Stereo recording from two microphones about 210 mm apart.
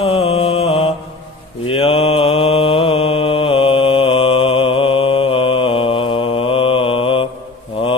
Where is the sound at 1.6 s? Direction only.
25° left (ahead or behind).